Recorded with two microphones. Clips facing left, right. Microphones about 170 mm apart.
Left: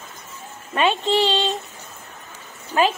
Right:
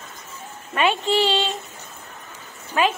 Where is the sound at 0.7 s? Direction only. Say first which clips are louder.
Left 1 dB; 25° left (ahead or behind).